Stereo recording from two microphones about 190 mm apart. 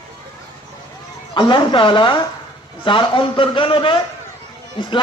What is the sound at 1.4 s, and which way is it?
A man's voice, 25° left (ahead or behind).